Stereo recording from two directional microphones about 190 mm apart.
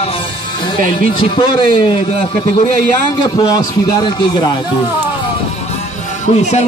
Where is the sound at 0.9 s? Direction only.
25° left (ahead or behind).